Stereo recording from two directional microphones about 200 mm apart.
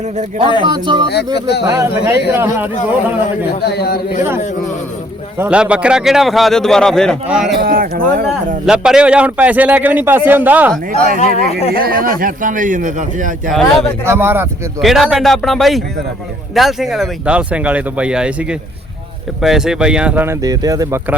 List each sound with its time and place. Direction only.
0.0 s a man's voice: 35° right (ahead or behind)
0.6 s speech: 25° right (ahead or behind)
1.0 s speech: 55° left (ahead or behind)
1.6 s speech: 20° right (ahead or behind)
3.6 s a man's voice: 55° left (ahead or behind)
4.4 s speech: 35° left (ahead or behind)
5.4 s a man's voice: 5° right (ahead or behind)
7.5 s speech: 50° right (ahead or behind)
8.6 s speech: 5° right (ahead or behind)
11.3 s speech: 30° left (ahead or behind)
11.7 s a man's voice: 50° right (ahead or behind)
13.5 s a man's voice: centre (ahead or behind)
14.0 s a man's voice: 10° right (ahead or behind)